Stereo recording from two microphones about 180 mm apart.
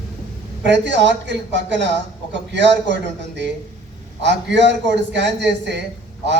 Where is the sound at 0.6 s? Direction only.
80° right.